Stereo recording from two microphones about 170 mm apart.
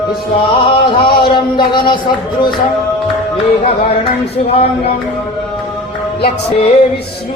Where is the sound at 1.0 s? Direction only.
30° left (ahead or behind).